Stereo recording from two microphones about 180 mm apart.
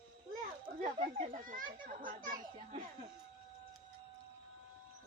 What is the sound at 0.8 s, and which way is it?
A child's voice, 45° right (ahead or behind).